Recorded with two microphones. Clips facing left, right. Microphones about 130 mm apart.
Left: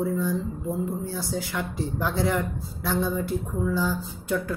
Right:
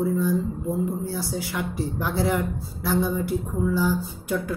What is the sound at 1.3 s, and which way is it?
Speech, 10° right (ahead or behind).